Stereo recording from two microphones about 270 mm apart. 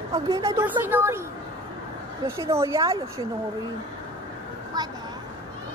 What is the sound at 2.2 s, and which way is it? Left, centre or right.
A woman's voice, centre.